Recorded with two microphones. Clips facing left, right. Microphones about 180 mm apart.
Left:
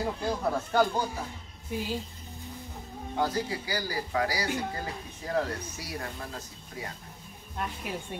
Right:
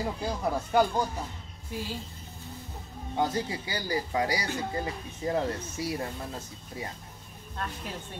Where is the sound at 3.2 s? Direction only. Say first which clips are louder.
Right 1 dB; 25° right (ahead or behind).